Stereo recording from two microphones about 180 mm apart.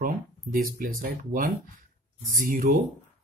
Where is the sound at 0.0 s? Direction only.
50° right (ahead or behind).